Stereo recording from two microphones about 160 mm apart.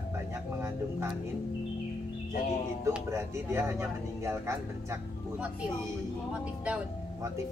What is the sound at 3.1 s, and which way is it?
Speech, 15° right (ahead or behind).